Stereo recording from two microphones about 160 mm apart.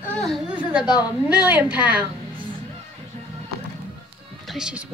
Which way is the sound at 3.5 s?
90° right.